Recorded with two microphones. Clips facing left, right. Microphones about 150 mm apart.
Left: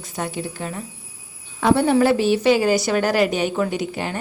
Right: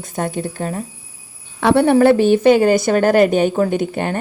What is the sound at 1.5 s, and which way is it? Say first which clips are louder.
A woman's voice: right 4 dB; 65° right (ahead or behind).